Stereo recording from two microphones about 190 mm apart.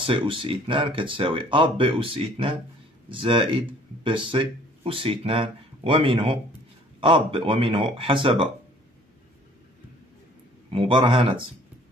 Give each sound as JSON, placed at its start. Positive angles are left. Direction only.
{"t": 0.0, "sound": "speech", "side_deg": -25}
{"t": 10.7, "sound": "speech", "side_deg": -25}